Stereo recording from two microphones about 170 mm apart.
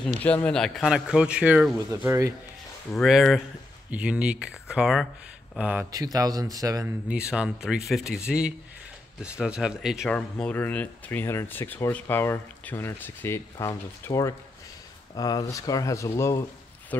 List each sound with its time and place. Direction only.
0.2 s speech: 10° left (ahead or behind); by 2.3 s 15° right (ahead or behind)
2.9 s speech: centre (ahead or behind)
6.1 s speech: 20° right (ahead or behind)
7.1 s speech: 5° right (ahead or behind); by 16.4 s 15° left (ahead or behind)